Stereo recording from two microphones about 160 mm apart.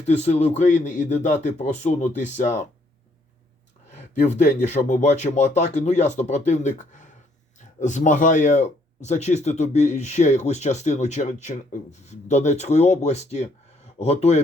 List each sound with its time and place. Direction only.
0.0 s speech: 45° left (ahead or behind)
4.2 s a man's voice: 50° left (ahead or behind)